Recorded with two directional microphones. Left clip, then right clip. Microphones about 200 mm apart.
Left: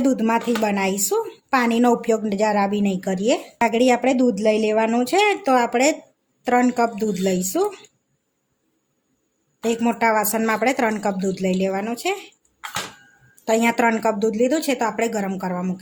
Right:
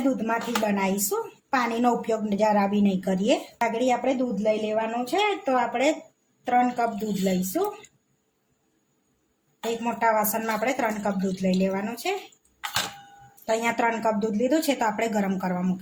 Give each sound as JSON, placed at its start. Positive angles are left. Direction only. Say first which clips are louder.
{"t": 0.3, "sound": "speech", "louder": "left 5 dB", "side_deg": 45}
{"t": 9.8, "sound": "speech", "louder": "left 3 dB", "side_deg": 45}
{"t": 13.4, "sound": "a woman's voice", "louder": "left 6 dB", "side_deg": 40}